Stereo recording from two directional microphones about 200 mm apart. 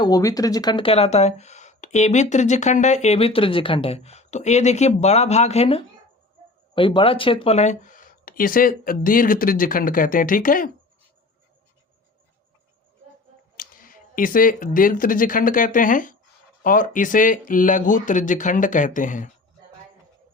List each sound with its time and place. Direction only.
0.0 s speech: 15° left (ahead or behind); by 10.7 s 45° left (ahead or behind)
13.6 s speech: 45° left (ahead or behind)